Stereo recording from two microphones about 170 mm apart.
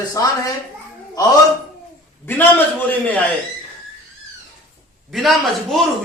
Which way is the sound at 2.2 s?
10° left (ahead or behind).